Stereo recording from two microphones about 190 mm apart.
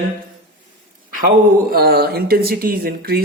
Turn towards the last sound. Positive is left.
turn(degrees=-50)  # may be behind; listen again after turning